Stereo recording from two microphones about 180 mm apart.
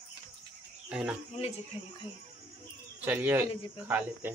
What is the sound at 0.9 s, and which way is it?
Speech, 5° right (ahead or behind).